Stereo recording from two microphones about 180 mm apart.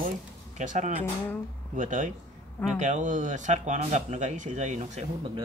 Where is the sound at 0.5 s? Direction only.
45° right (ahead or behind).